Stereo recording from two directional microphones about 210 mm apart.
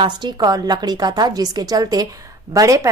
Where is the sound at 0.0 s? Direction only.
20° right (ahead or behind).